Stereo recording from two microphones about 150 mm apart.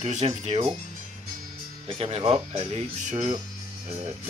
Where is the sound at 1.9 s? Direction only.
40° right (ahead or behind).